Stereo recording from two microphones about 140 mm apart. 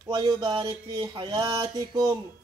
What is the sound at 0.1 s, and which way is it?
Speech, 25° right (ahead or behind).